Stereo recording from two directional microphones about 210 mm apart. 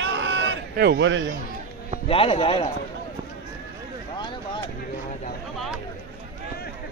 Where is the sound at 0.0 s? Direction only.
60° right (ahead or behind).